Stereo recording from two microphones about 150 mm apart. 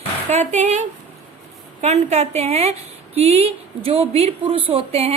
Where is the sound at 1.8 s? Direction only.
45° right (ahead or behind).